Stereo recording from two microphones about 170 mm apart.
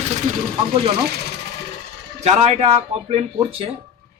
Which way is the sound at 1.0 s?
75° right (ahead or behind).